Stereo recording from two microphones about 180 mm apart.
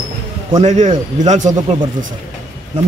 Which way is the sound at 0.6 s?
40° right (ahead or behind).